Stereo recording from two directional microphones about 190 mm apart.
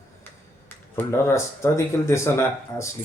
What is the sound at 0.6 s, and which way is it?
Speech, 15° left (ahead or behind).